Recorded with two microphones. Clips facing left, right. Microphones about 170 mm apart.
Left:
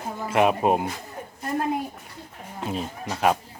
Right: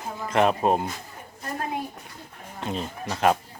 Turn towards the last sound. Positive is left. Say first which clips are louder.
# even
turn(degrees=5)  # may be behind; listen again after turning